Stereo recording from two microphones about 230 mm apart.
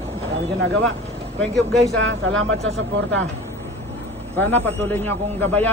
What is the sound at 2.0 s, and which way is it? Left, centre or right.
Speech, right.